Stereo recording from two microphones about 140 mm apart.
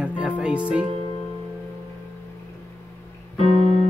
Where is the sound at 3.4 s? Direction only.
45° right (ahead or behind).